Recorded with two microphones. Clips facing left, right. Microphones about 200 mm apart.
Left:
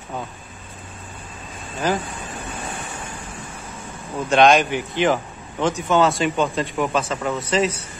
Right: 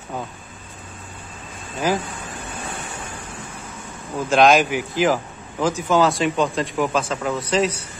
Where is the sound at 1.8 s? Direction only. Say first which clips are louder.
Right 1 dB; 10° right (ahead or behind).